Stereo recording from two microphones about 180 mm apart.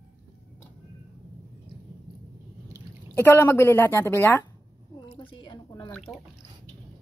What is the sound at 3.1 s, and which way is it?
Speech, 10° left (ahead or behind).